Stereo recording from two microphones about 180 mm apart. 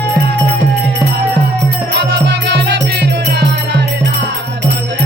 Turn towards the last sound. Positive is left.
turn(degrees=-70)  # may be behind; listen again after turning